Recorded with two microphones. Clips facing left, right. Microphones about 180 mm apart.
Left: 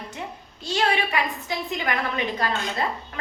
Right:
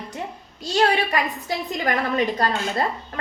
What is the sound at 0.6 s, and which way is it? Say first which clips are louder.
Speech: right 4 dB; 40° right (ahead or behind).